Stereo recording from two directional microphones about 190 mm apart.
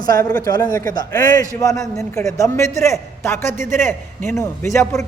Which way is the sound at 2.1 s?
15° left (ahead or behind).